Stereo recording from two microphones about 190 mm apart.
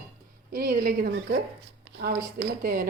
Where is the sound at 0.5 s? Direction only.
55° right (ahead or behind).